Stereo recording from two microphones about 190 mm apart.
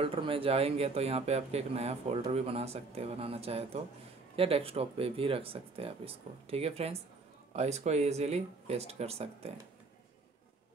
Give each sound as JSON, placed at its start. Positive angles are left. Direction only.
{"t": 0.0, "sound": "speech", "side_deg": -30}